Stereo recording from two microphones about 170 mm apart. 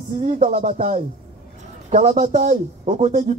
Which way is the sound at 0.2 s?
40° right (ahead or behind).